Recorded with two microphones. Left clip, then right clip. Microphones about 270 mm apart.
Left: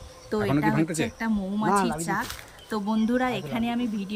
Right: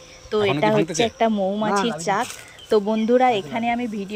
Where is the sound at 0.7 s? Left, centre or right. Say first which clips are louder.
Right 7 dB; centre.